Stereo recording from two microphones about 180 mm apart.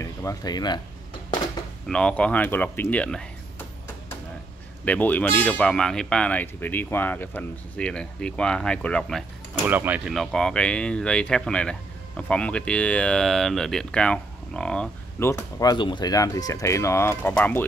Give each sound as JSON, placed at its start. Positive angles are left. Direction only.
{"t": 0.0, "sound": "speech", "side_deg": 15}
{"t": 1.9, "sound": "speech", "side_deg": 5}
{"t": 9.7, "sound": "speech", "side_deg": -10}